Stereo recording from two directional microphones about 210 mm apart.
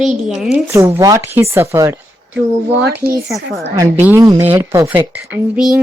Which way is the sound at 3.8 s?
10° right (ahead or behind).